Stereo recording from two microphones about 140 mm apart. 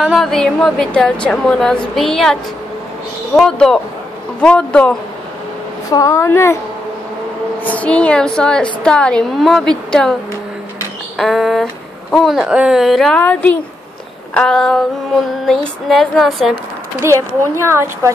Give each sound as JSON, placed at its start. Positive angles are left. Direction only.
{"t": 0.0, "sound": "a woman's voice", "side_deg": 0}
{"t": 3.3, "sound": "a woman's voice", "side_deg": 5}
{"t": 5.9, "sound": "a woman's voice", "side_deg": 25}
{"t": 7.6, "sound": "a woman's voice", "side_deg": 10}
{"t": 11.1, "sound": "a woman's voice", "side_deg": 0}
{"t": 17.0, "sound": "speech", "side_deg": -20}